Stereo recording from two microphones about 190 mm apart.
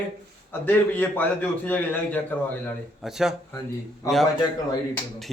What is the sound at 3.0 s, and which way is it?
Speech, 5° right (ahead or behind).